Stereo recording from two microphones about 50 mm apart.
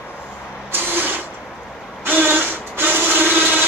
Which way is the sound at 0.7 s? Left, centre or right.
Right.